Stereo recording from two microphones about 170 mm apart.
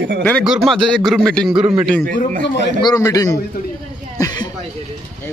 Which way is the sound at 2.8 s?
20° left (ahead or behind).